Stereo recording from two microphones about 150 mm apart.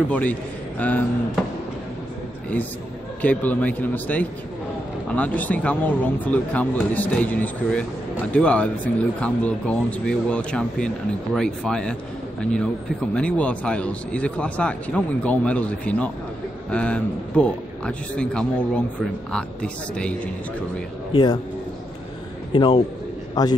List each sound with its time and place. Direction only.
0.1 s a man's voice: 10° left (ahead or behind)
3.2 s speech: 10° left (ahead or behind)
21.1 s a man's voice: 30° left (ahead or behind)
22.5 s a man's voice: 35° left (ahead or behind)